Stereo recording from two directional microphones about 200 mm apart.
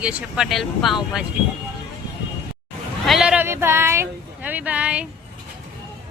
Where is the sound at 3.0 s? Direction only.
Centre (ahead or behind).